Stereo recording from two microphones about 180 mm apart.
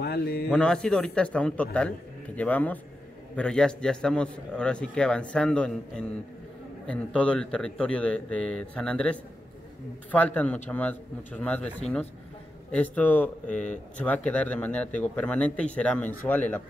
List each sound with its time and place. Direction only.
0.0 s speech: 60° left (ahead or behind)
0.5 s a man's voice: 5° left (ahead or behind)